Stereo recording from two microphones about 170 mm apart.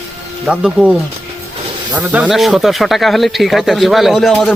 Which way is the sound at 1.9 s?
10° right (ahead or behind).